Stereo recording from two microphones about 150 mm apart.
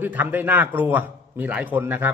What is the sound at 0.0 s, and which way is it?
A man's voice, 10° right (ahead or behind).